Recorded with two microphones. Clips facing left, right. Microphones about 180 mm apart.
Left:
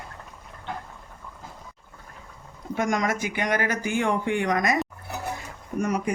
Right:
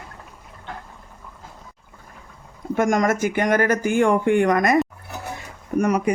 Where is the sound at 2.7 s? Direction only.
50° right (ahead or behind).